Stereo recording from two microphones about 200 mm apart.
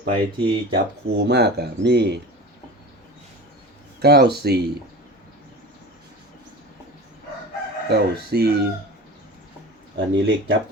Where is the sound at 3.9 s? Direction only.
55° right (ahead or behind).